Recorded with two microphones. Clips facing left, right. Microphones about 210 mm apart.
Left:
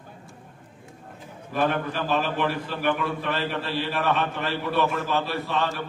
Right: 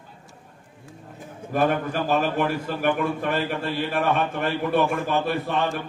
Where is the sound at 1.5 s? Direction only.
50° right (ahead or behind).